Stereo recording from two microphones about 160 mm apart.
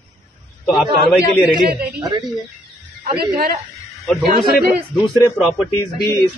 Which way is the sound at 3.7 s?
Centre (ahead or behind).